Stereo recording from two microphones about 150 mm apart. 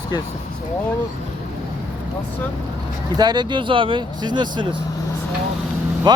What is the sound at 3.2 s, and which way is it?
Speech, 30° right (ahead or behind).